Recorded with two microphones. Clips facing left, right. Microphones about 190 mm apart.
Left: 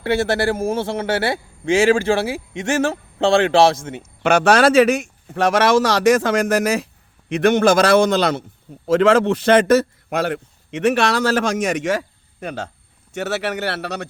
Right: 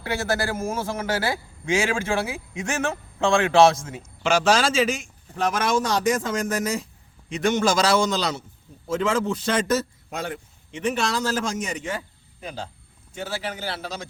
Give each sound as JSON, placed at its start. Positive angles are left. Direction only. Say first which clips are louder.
{"t": 0.0, "sound": "a man's voice", "louder": "left 7 dB", "side_deg": 30}
{"t": 4.2, "sound": "a man's voice", "louder": "left 6 dB", "side_deg": 60}
{"t": 8.9, "sound": "a man's voice", "louder": "left 9 dB", "side_deg": 70}